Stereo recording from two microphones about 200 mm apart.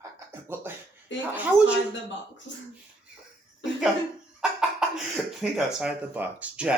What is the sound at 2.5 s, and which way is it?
Speech, 65° left (ahead or behind).